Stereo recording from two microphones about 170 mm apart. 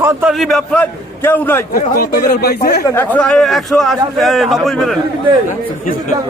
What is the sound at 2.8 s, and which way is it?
Speech, 10° left (ahead or behind).